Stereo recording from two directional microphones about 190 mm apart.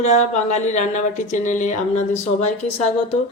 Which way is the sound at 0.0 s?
35° left (ahead or behind).